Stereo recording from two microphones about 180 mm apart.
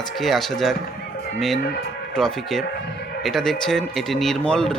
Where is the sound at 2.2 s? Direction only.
5° left (ahead or behind).